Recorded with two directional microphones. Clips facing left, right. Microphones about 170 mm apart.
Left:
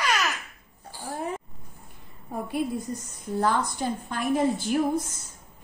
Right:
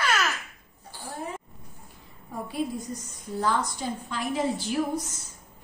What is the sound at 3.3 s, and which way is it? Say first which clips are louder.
A woman's voice: left 2 dB; 55° left (ahead or behind).